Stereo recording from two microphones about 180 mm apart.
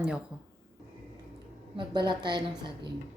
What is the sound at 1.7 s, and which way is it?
Speech, 25° right (ahead or behind).